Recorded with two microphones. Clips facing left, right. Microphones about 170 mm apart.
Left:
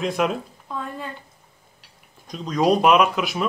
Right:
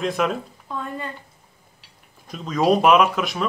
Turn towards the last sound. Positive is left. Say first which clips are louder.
# right 1 dB
turn(degrees=0)  # may be behind; listen again after turning